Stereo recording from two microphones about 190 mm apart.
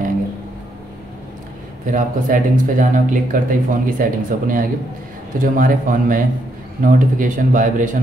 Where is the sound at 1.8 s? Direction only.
45° right (ahead or behind).